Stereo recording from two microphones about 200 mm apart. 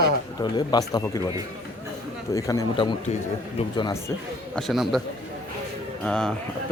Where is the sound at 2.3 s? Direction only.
15° left (ahead or behind).